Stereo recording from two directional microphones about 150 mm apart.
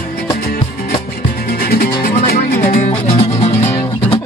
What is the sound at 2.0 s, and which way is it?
Music, 75° left (ahead or behind).